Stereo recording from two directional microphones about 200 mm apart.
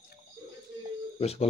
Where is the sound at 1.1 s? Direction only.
30° left (ahead or behind).